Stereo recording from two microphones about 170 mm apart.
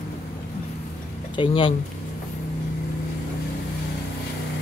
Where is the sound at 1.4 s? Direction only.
30° left (ahead or behind).